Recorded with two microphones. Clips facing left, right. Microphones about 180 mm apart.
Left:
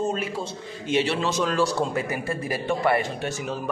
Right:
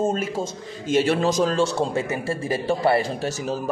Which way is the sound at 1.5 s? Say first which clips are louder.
Right 2 dB; 25° right (ahead or behind).